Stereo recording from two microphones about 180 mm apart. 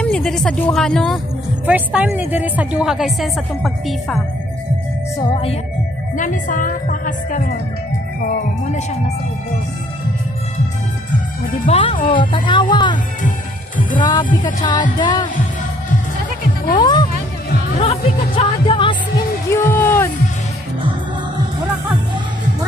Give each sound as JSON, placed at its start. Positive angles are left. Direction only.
{"t": 0.0, "sound": "speech", "side_deg": 5}
{"t": 5.2, "sound": "speech", "side_deg": 30}
{"t": 6.1, "sound": "a woman's voice", "side_deg": 45}
{"t": 11.6, "sound": "speech", "side_deg": 30}
{"t": 14.0, "sound": "speech", "side_deg": 25}
{"t": 16.7, "sound": "music", "side_deg": 25}
{"t": 17.7, "sound": "speech", "side_deg": 30}
{"t": 19.5, "sound": "a sound", "side_deg": 10}